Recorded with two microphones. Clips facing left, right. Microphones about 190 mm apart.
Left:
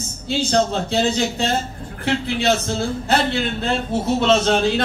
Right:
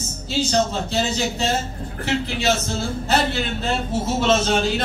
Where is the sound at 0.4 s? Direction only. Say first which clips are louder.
Left 1 dB; 60° left (ahead or behind).